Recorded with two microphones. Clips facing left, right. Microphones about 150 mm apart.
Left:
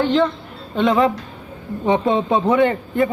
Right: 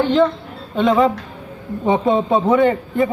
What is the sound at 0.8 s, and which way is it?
A man's voice, centre (ahead or behind).